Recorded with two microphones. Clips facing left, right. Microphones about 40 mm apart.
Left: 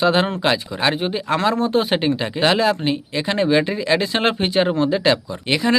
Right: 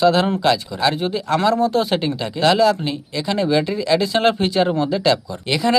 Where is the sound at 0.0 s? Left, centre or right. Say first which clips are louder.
Right 2 dB; left.